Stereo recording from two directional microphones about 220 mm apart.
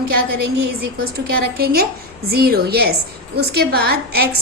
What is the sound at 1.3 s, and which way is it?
A woman's voice, 45° right (ahead or behind).